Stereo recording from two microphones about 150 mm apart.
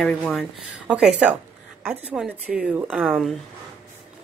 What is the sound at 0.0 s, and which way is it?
Speech, centre (ahead or behind).